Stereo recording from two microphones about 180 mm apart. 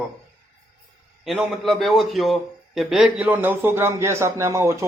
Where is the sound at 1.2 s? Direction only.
Centre (ahead or behind).